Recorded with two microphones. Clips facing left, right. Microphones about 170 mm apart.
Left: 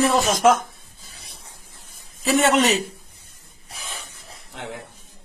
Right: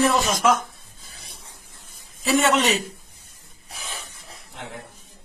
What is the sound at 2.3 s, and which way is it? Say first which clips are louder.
Speech: left 2 dB; 40° left (ahead or behind).